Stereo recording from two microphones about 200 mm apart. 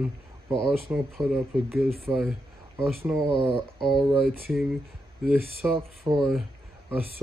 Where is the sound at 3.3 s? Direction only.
25° right (ahead or behind).